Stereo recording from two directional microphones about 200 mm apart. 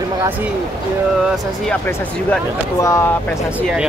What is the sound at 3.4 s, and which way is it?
Speech, 5° right (ahead or behind).